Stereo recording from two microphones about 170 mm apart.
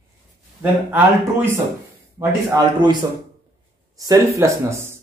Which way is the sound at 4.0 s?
20° right (ahead or behind).